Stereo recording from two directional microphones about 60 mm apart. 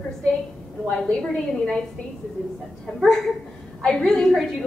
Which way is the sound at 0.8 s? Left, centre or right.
Centre.